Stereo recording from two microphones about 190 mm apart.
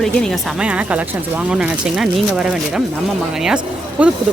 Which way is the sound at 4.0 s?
5° right (ahead or behind).